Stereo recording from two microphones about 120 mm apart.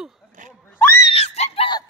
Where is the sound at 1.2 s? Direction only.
65° left (ahead or behind).